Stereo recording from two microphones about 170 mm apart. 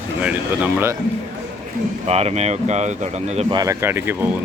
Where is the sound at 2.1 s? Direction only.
40° right (ahead or behind).